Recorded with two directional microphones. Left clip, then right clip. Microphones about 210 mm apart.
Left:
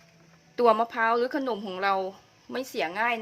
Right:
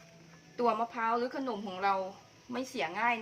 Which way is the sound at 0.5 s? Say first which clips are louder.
Left 9 dB; 50° left (ahead or behind).